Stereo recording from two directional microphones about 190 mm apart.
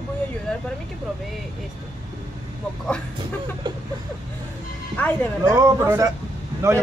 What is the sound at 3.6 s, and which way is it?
Speech, 25° right (ahead or behind).